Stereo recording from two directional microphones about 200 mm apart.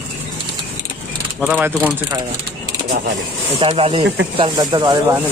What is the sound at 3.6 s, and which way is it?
Speech, 30° right (ahead or behind).